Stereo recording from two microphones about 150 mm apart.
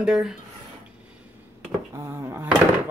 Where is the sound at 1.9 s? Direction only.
15° right (ahead or behind).